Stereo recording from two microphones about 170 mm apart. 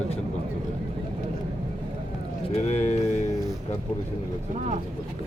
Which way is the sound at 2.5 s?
40° left (ahead or behind).